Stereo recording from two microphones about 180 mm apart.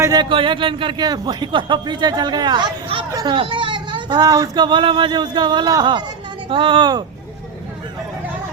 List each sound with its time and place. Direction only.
0.0 s a man's voice: 20° right (ahead or behind)